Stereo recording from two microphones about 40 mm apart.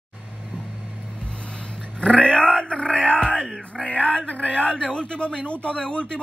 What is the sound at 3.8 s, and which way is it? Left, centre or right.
Male singing, left.